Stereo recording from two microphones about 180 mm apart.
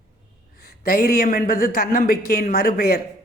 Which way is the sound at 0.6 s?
55° left (ahead or behind).